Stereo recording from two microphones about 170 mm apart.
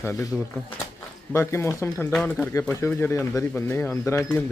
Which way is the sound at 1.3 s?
15° left (ahead or behind).